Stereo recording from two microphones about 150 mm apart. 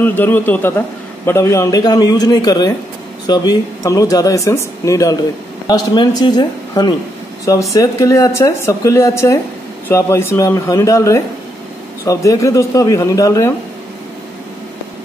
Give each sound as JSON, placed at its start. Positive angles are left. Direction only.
{"t": 0.0, "sound": "a man's voice", "side_deg": 10}